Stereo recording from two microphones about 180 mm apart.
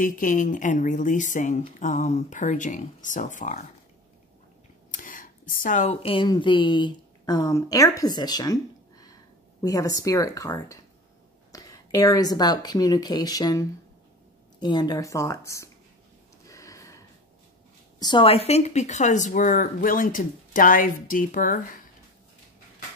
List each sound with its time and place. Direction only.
0.0 s speech: 50° left (ahead or behind)
4.9 s speech: 50° left (ahead or behind); by 15.7 s 15° left (ahead or behind)
16.4 s a sound: 15° left (ahead or behind)
17.9 s speech: 25° left (ahead or behind); by 21.5 s 50° left (ahead or behind)